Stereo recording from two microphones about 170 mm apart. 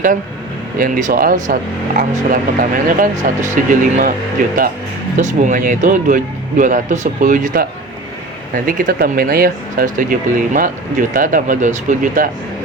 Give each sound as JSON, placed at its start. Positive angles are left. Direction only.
{"t": 0.8, "sound": "speech", "side_deg": -50}
{"t": 5.1, "sound": "speech", "side_deg": -45}